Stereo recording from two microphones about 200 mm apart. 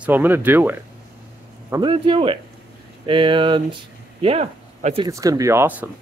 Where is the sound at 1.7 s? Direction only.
25° right (ahead or behind).